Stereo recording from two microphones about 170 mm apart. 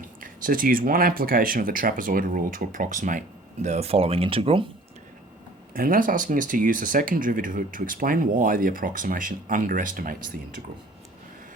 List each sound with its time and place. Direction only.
0.2 s speech: 55° right (ahead or behind); by 4.6 s 35° right (ahead or behind)
5.7 s speech: 55° right (ahead or behind)